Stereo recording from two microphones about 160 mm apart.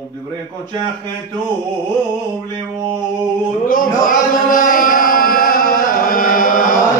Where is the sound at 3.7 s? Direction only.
55° left (ahead or behind).